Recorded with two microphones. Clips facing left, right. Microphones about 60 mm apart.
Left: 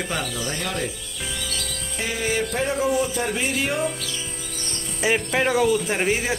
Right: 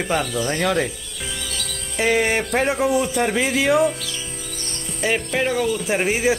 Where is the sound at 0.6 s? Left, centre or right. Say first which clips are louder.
Right 10 dB; right.